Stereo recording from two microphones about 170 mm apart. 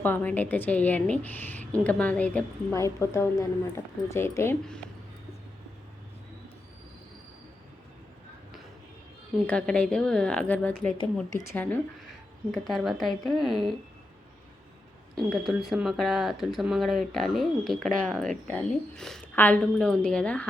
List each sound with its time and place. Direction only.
0.0 s a woman's voice: 10° left (ahead or behind)
9.5 s a woman's voice: 5° left (ahead or behind)
12.6 s speech: centre (ahead or behind)
15.7 s speech: centre (ahead or behind)